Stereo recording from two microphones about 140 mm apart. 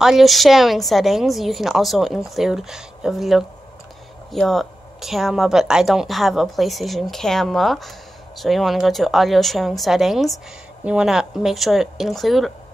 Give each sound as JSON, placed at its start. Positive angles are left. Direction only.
{"t": 0.0, "sound": "speech", "side_deg": 0}